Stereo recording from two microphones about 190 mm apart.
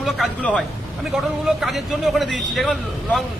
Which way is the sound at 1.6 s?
Centre (ahead or behind).